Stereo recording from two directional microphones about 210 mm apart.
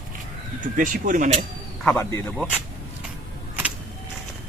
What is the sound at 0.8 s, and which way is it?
Speech, 40° right (ahead or behind).